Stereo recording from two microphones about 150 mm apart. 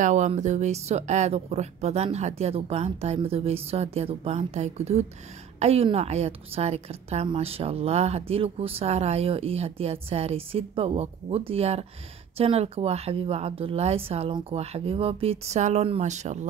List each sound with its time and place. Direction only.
0.0 s a woman's voice: 55° right (ahead or behind)